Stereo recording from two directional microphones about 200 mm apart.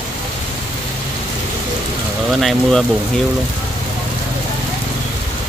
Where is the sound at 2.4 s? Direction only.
Centre (ahead or behind).